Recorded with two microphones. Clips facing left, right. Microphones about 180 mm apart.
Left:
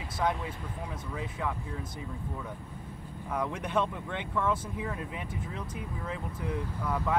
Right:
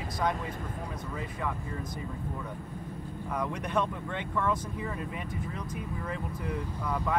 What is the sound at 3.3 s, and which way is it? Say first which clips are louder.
Speech: left 1 dB; 5° left (ahead or behind).